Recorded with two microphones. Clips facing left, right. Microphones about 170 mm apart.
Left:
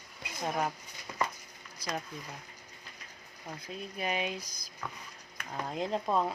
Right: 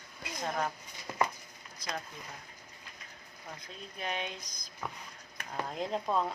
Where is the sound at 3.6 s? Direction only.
10° left (ahead or behind).